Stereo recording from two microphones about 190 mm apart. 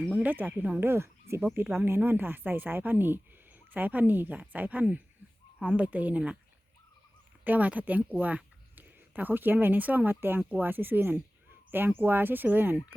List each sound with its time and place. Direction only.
0.0 s speech: 5° right (ahead or behind)
7.4 s speech: 10° right (ahead or behind)